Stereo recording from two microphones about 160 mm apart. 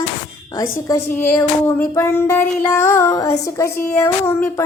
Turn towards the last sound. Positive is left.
turn(degrees=15)  # may be behind; listen again after turning